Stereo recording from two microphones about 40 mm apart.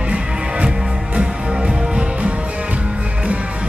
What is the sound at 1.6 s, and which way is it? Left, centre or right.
Music, right.